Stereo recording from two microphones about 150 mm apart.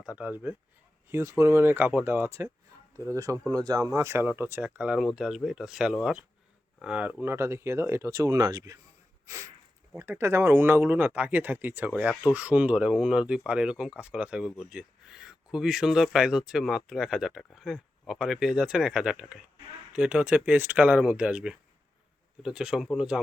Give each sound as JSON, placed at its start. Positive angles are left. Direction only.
{"t": 0.2, "sound": "speech", "side_deg": -10}
{"t": 9.2, "sound": "a sound", "side_deg": -20}
{"t": 10.0, "sound": "speech", "side_deg": -20}